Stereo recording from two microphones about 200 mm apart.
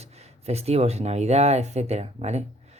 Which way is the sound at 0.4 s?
30° right (ahead or behind).